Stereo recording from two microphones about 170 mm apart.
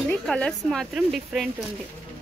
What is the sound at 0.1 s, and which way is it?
Speech, 5° left (ahead or behind).